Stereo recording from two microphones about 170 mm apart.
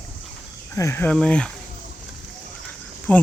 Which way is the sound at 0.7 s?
15° left (ahead or behind).